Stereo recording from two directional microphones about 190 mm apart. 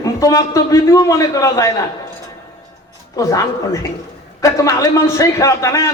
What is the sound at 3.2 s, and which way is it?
A man's voice, 15° left (ahead or behind).